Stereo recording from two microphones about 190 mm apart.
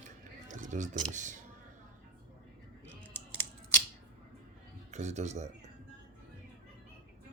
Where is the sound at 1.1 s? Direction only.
40° right (ahead or behind).